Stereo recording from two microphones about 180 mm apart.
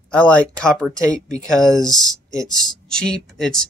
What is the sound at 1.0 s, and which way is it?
Speech, 20° right (ahead or behind).